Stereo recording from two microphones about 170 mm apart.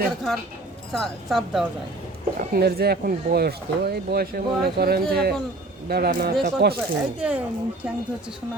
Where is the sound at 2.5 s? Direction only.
65° right (ahead or behind).